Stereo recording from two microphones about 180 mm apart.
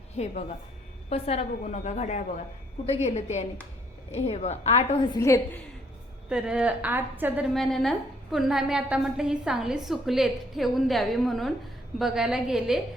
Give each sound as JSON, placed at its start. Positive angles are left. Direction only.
{"t": 0.2, "sound": "a woman's voice", "side_deg": 35}
{"t": 5.2, "sound": "a woman's voice", "side_deg": 15}
{"t": 6.2, "sound": "a woman's voice", "side_deg": -5}